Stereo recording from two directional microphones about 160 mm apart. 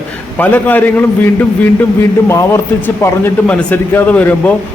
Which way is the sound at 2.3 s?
15° left (ahead or behind).